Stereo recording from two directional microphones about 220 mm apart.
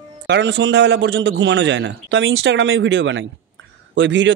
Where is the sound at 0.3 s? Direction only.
55° right (ahead or behind).